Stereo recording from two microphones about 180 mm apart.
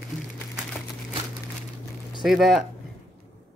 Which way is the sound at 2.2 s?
Centre (ahead or behind).